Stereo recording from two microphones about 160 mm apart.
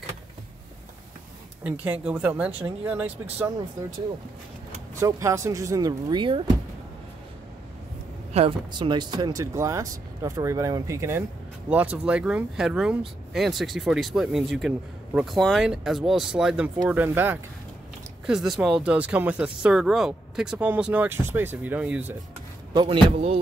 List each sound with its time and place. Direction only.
1.6 s speech: 10° right (ahead or behind)
5.0 s speech: 20° right (ahead or behind)
8.3 s speech: 35° right (ahead or behind); by 22.1 s 10° right (ahead or behind)
22.8 s speech: 35° right (ahead or behind)